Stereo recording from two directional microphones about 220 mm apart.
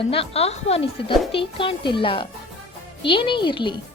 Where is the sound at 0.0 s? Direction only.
25° left (ahead or behind).